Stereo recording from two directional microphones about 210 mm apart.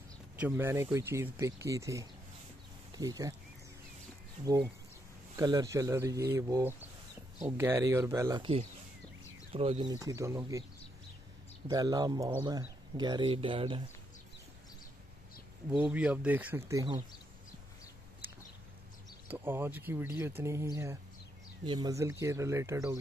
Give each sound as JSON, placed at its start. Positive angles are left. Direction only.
{"t": 0.4, "sound": "speech", "side_deg": -10}
{"t": 5.3, "sound": "speech", "side_deg": -15}
{"t": 11.6, "sound": "speech", "side_deg": -20}
{"t": 15.7, "sound": "speech", "side_deg": -5}
{"t": 19.2, "sound": "speech", "side_deg": -10}